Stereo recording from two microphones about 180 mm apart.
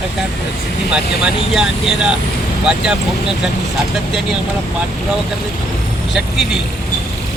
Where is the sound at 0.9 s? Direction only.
5° right (ahead or behind).